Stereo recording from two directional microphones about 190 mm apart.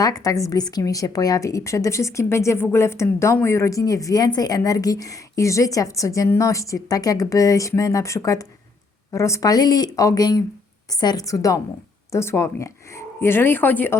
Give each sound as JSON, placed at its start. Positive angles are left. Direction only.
{"t": 0.0, "sound": "a woman's voice", "side_deg": 20}